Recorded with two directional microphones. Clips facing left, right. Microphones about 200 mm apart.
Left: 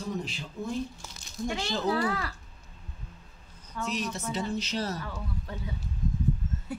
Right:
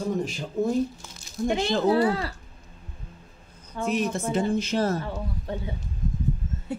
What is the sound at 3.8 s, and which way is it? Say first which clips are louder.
Speech: right 7 dB; 55° right (ahead or behind).